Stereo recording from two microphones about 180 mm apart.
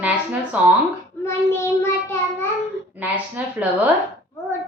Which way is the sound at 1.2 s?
15° left (ahead or behind).